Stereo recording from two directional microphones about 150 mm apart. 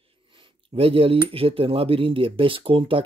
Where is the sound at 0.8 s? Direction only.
40° right (ahead or behind).